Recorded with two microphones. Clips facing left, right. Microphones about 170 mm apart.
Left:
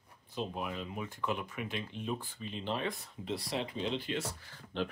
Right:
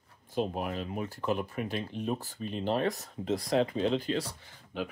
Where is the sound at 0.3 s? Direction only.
50° right (ahead or behind).